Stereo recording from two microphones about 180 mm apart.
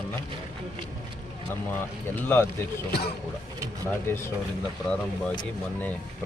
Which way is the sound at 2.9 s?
60° left (ahead or behind).